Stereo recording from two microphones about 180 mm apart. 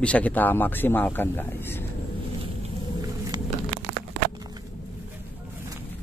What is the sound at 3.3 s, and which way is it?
Crumpling, 25° right (ahead or behind).